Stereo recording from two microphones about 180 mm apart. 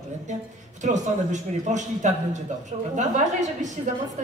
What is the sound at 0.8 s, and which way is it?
A man's voice, 40° right (ahead or behind).